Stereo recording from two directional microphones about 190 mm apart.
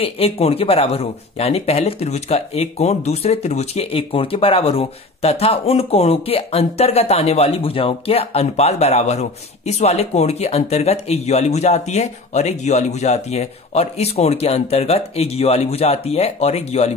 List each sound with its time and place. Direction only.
0.0 s speech: 30° left (ahead or behind)